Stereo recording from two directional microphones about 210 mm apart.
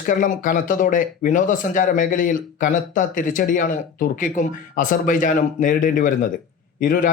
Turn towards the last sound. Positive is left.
turn(degrees=40)  # may be behind; listen again after turning